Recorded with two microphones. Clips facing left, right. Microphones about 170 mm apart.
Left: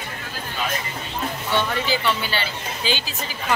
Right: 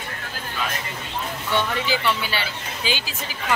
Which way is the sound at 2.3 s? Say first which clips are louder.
Left 1 dB; 10° right (ahead or behind).